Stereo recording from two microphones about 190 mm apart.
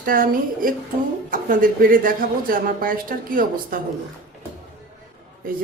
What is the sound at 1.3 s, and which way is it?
A woman's voice, 45° right (ahead or behind).